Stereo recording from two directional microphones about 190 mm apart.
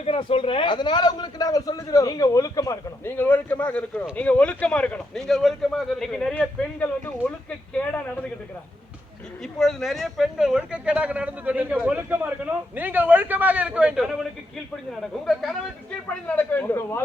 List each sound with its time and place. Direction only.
0.0 s a man's voice: 30° left (ahead or behind); by 8.3 s 10° left (ahead or behind)
9.4 s speech: centre (ahead or behind)